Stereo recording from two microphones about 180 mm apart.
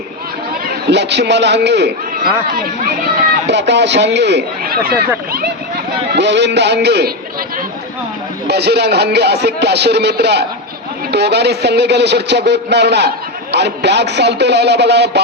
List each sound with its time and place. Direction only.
0.9 s a man's voice: 70° right (ahead or behind)
3.5 s a man's voice: 75° right (ahead or behind); by 5.5 s 60° right (ahead or behind)
6.1 s a man's voice: 75° right (ahead or behind)
8.4 s a man's voice: 65° right (ahead or behind)